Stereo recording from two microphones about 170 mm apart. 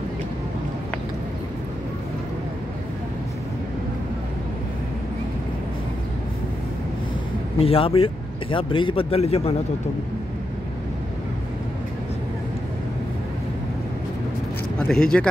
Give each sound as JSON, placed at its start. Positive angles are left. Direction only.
{"t": 7.5, "sound": "speech", "side_deg": 35}
{"t": 14.8, "sound": "speech", "side_deg": 5}